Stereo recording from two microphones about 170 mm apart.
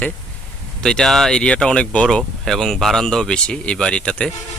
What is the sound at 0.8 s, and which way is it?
Speech, 5° left (ahead or behind).